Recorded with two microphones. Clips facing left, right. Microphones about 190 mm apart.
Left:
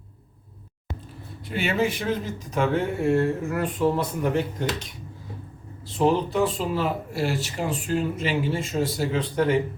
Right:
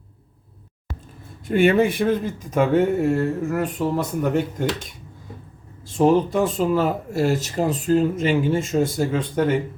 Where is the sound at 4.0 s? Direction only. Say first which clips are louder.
Right 3 dB; 45° right (ahead or behind).